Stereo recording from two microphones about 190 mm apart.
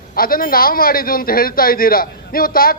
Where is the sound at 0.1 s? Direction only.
50° left (ahead or behind).